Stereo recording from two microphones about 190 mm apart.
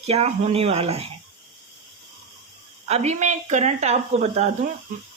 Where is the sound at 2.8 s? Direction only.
35° right (ahead or behind).